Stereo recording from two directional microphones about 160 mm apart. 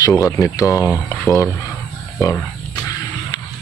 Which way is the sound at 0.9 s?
5° left (ahead or behind).